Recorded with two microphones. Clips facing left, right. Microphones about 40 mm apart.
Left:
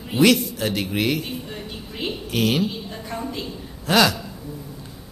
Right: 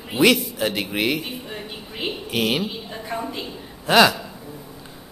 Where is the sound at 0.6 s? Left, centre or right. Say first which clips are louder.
Even; centre.